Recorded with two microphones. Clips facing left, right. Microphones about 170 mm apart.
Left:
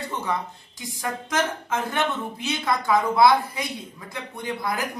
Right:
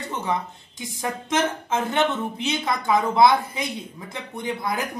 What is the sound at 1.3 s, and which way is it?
Speech, 20° right (ahead or behind).